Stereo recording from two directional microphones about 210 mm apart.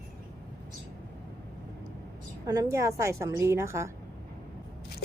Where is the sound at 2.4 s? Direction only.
15° right (ahead or behind).